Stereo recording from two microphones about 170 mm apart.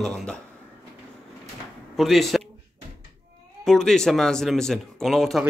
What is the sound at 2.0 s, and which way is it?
Speech, centre (ahead or behind).